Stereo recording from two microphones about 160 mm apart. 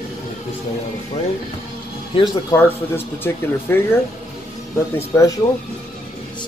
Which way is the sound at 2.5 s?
15° left (ahead or behind).